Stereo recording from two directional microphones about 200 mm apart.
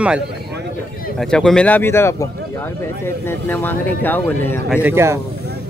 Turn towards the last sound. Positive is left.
turn(degrees=-10)  # may be behind; listen again after turning